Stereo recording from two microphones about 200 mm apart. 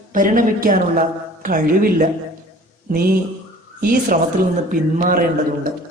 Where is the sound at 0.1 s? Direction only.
45° right (ahead or behind).